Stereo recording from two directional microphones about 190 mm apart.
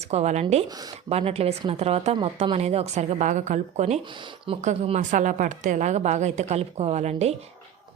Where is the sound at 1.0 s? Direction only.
30° right (ahead or behind).